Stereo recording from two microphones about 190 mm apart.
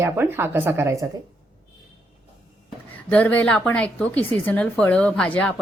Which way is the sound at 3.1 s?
10° left (ahead or behind).